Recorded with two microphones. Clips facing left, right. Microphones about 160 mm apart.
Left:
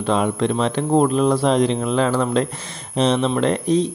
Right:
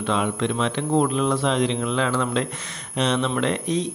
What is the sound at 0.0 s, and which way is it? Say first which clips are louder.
Speech: left 4 dB; 40° left (ahead or behind).